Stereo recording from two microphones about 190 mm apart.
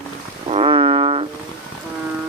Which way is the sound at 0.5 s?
30° right (ahead or behind).